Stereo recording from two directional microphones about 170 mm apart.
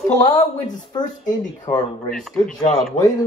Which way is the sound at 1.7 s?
20° left (ahead or behind).